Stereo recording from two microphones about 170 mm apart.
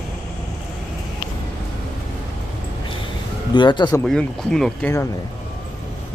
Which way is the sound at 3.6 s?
25° left (ahead or behind).